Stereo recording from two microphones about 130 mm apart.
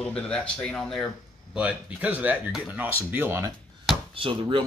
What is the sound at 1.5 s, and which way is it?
Speech, 10° right (ahead or behind).